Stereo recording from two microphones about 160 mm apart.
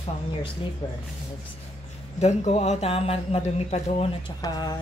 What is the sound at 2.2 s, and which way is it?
Speech, 45° left (ahead or behind).